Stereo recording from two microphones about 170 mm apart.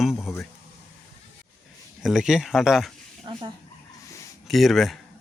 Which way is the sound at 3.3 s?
30° right (ahead or behind).